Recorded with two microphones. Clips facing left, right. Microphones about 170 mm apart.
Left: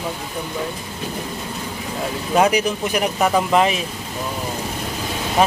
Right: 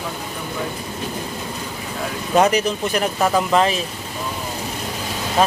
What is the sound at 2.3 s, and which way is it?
Speech, 10° left (ahead or behind).